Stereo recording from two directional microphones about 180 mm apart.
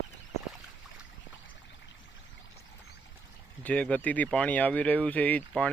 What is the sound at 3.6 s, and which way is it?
Speech, 5° left (ahead or behind).